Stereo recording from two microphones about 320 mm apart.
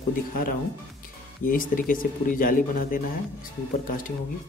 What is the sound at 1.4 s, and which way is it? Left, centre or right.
Speech, left.